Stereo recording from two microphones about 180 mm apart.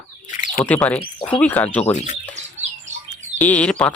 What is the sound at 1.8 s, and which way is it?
Speech, 40° left (ahead or behind).